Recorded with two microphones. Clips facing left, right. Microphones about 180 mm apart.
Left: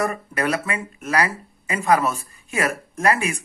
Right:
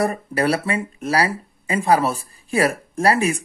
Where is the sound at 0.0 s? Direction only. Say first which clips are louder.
Right 3 dB; 35° right (ahead or behind).